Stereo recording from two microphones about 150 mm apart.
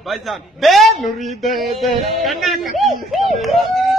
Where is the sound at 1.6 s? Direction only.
45° right (ahead or behind).